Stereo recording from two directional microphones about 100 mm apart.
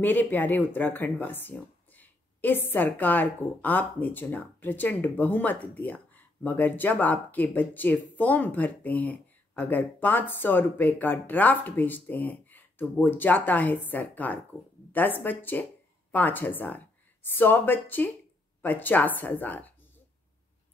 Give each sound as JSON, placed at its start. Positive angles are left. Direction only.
{"t": 0.0, "sound": "a woman's voice", "side_deg": 20}